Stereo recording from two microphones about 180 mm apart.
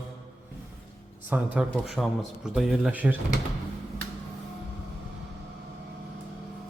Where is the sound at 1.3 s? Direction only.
10° right (ahead or behind).